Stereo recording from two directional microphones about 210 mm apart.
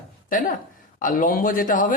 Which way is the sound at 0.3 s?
40° left (ahead or behind).